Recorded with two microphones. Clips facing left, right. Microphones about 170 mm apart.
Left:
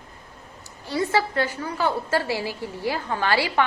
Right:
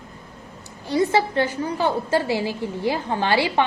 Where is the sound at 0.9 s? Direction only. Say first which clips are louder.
Right 4 dB; 20° right (ahead or behind).